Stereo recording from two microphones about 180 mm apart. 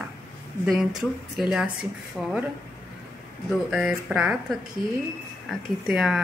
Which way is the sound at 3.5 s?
Centre (ahead or behind).